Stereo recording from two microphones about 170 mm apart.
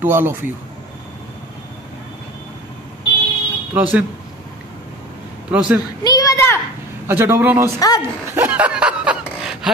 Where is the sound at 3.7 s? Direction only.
10° right (ahead or behind).